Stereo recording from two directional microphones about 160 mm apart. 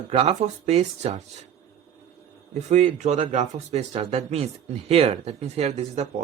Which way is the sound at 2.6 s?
45° right (ahead or behind).